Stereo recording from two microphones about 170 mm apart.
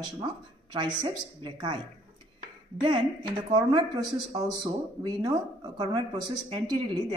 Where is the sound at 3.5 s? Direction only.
25° right (ahead or behind).